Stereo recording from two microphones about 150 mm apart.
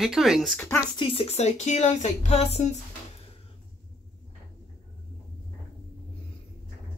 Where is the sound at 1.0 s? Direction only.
40° left (ahead or behind).